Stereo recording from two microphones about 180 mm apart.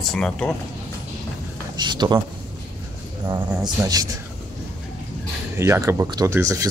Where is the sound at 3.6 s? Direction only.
20° right (ahead or behind).